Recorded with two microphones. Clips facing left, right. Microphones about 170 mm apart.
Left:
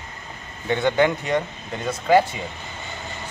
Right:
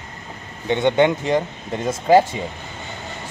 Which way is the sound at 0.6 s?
25° right (ahead or behind).